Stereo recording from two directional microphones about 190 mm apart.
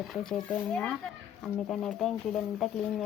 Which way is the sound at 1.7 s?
Centre (ahead or behind).